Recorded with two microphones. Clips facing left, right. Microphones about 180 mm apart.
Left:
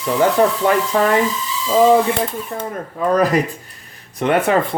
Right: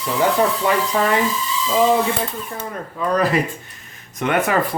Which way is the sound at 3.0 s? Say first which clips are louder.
Left 3 dB; 45° left (ahead or behind).